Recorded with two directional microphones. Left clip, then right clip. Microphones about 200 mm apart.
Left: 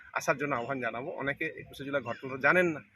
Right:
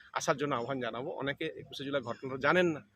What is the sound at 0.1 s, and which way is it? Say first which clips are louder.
A man's voice: left 1 dB; 20° right (ahead or behind).